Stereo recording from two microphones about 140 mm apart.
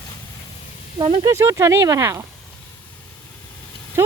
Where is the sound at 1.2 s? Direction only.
20° right (ahead or behind).